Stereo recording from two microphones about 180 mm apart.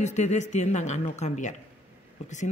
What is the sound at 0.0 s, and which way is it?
Speech, 40° left (ahead or behind).